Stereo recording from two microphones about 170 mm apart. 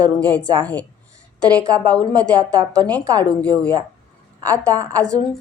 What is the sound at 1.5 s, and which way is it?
Speech, 5° left (ahead or behind).